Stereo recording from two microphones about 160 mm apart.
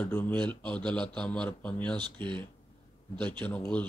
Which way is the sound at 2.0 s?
30° right (ahead or behind).